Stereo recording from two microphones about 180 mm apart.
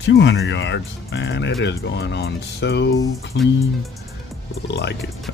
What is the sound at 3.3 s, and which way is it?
Speech, 90° left.